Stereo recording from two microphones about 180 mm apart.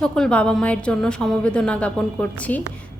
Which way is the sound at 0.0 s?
5° left (ahead or behind).